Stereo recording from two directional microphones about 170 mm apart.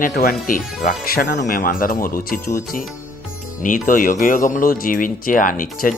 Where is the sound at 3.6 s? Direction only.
50° left (ahead or behind).